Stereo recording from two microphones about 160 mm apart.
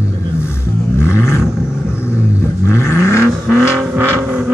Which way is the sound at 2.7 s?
15° left (ahead or behind).